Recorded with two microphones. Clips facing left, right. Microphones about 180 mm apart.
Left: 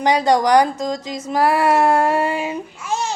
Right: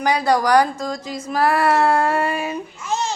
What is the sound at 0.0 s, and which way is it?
Speech, 20° left (ahead or behind).